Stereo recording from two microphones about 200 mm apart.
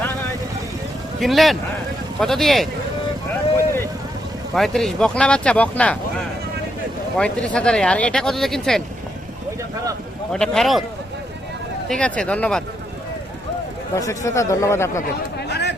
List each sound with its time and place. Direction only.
1.2 s speech: centre (ahead or behind)
4.5 s speech: centre (ahead or behind)
7.2 s speech: 5° left (ahead or behind)
10.3 s speech: 5° left (ahead or behind)
11.9 s speech: 5° left (ahead or behind)
13.9 s speech: 15° left (ahead or behind)
15.4 s a sound: 60° left (ahead or behind)